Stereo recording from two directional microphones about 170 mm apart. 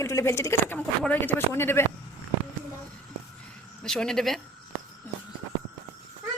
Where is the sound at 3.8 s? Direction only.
5° left (ahead or behind).